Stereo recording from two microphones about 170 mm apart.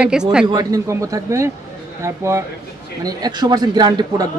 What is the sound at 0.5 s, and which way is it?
A man's voice, 20° right (ahead or behind).